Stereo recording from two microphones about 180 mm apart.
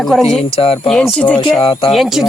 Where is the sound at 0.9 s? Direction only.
5° left (ahead or behind).